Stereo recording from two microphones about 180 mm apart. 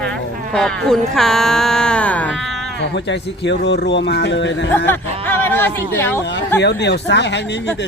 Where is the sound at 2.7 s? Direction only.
75° left (ahead or behind).